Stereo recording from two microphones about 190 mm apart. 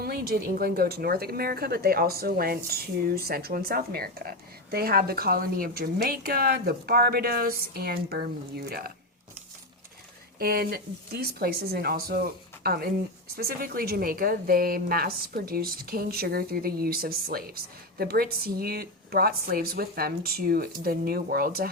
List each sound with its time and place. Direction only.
0.0 s a woman's voice: 55° right (ahead or behind)
10.3 s a woman's voice: 50° right (ahead or behind)